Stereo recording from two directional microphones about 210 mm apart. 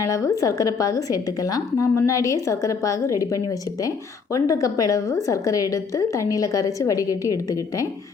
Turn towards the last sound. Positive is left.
turn(degrees=15)  # may be behind; listen again after turning